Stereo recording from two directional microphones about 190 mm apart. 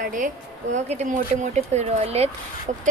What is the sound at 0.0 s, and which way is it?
A woman's voice, 45° right (ahead or behind).